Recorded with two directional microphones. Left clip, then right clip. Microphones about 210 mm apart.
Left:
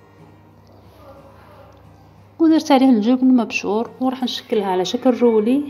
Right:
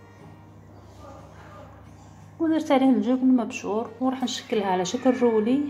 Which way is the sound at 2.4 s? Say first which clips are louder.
Left 8 dB; 35° left (ahead or behind).